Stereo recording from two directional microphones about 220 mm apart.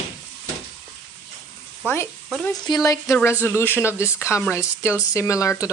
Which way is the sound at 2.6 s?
15° left (ahead or behind).